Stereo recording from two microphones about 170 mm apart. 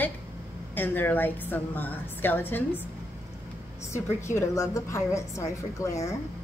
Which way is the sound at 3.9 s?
15° left (ahead or behind).